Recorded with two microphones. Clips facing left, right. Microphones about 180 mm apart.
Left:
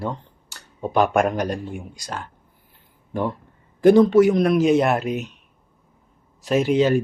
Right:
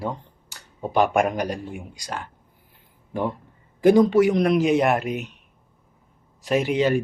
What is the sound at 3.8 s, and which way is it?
A man's voice, 10° right (ahead or behind).